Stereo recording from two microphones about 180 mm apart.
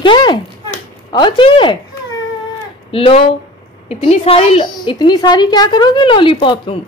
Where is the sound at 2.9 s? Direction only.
35° left (ahead or behind).